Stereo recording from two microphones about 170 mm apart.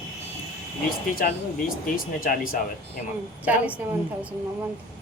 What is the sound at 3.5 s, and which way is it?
Speech, 10° right (ahead or behind).